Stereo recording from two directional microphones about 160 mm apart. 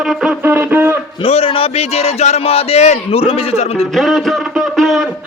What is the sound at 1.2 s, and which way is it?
A man's voice, 35° left (ahead or behind).